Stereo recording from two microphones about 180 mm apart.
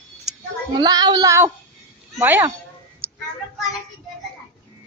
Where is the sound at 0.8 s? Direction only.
20° right (ahead or behind).